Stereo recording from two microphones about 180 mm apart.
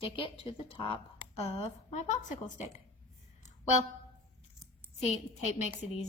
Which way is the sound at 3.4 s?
40° left (ahead or behind).